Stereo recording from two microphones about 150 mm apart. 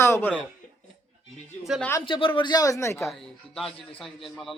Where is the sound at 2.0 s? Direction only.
35° left (ahead or behind); by 3.0 s 20° left (ahead or behind).